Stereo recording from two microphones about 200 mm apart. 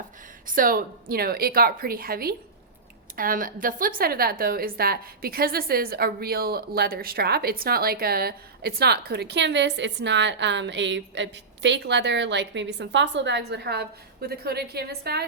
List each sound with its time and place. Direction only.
0.4 s a woman's voice: 45° right (ahead or behind)